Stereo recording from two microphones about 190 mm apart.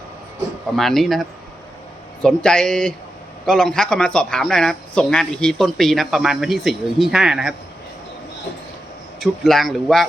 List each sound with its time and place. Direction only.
0.8 s speech: centre (ahead or behind)
9.2 s speech: centre (ahead or behind)